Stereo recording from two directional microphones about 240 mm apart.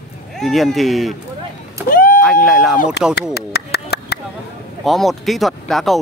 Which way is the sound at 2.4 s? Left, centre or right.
Centre.